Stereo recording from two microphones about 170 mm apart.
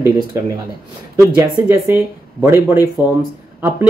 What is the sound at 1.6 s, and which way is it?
Speech, 15° right (ahead or behind).